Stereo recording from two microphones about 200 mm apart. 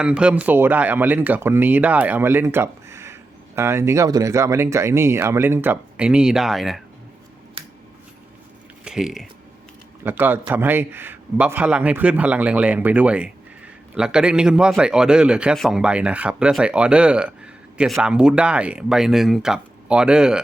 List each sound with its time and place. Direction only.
0.0 s speech: 5° right (ahead or behind)
7.6 s scissors: 30° right (ahead or behind)
8.8 s a sound: 5° right (ahead or behind)
10.0 s a man's voice: 10° right (ahead or behind)